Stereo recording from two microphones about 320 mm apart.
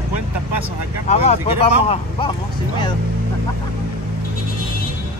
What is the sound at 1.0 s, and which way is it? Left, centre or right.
Speech, centre.